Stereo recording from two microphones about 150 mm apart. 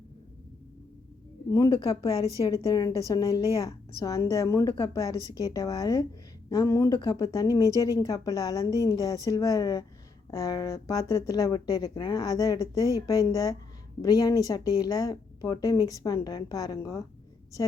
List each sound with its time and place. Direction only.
1.5 s speech: 20° left (ahead or behind)